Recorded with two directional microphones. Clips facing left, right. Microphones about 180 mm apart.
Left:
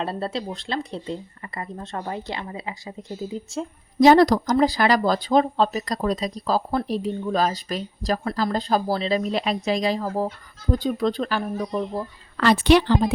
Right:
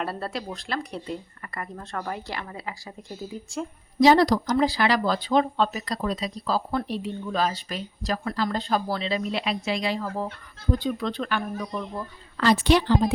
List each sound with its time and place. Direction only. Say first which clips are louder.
0.0 s speech: left 3 dB; 25° left (ahead or behind)
4.0 s speech: left 3 dB; 50° left (ahead or behind)
12.4 s speech: left 3 dB; 65° left (ahead or behind)